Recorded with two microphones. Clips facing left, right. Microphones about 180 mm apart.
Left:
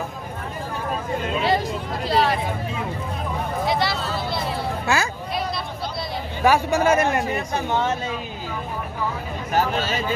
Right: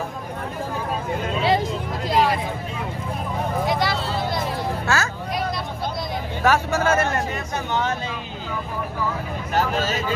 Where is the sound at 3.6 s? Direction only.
45° right (ahead or behind).